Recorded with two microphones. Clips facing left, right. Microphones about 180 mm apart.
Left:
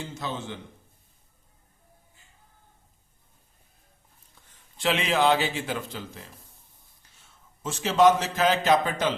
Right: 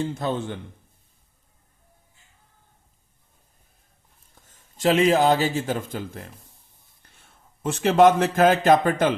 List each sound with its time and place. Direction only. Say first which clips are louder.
0.0 s a man's voice: right 8 dB; 55° right (ahead or behind)
4.4 s a man's voice: right 8 dB; 45° right (ahead or behind)